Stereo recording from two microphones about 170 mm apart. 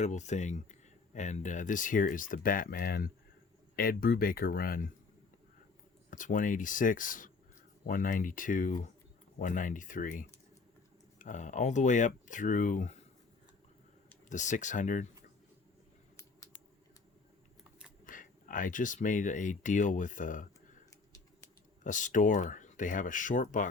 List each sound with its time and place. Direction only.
0.0 s speech: 45° left (ahead or behind); by 4.9 s 60° left (ahead or behind)
6.1 s speech: 50° left (ahead or behind)
14.3 s speech: 45° left (ahead or behind)
16.1 s scissors: 20° left (ahead or behind)
17.6 s a sound: 5° right (ahead or behind)
18.0 s speech: 50° left (ahead or behind)
21.8 s speech: 50° left (ahead or behind)